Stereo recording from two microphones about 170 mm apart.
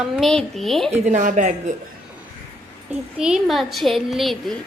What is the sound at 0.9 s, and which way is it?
Speech, 45° right (ahead or behind).